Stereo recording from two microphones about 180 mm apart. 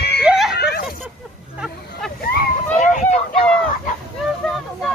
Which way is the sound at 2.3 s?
55° left (ahead or behind).